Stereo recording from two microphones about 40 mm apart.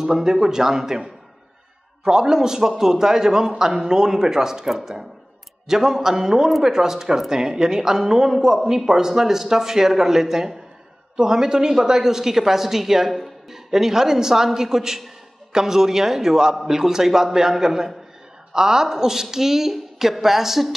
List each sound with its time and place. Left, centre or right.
0.0 s a man's voice: centre
2.0 s a man's voice: centre